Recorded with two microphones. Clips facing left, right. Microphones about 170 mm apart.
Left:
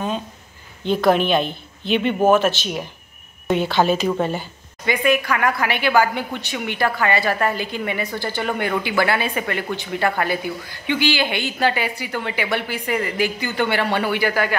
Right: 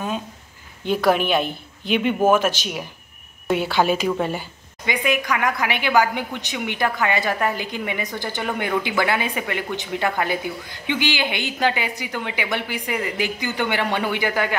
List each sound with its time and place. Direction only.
0.8 s a woman's voice: 10° right (ahead or behind)